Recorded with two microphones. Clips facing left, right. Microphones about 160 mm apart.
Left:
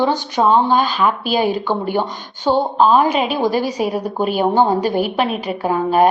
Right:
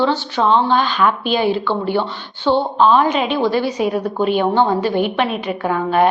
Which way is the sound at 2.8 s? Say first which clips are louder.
Even; 10° left (ahead or behind).